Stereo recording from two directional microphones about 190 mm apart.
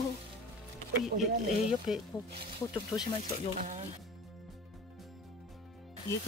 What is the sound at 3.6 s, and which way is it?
Speech, 40° right (ahead or behind).